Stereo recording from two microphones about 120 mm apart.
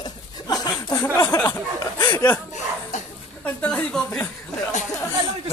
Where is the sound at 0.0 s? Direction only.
35° left (ahead or behind).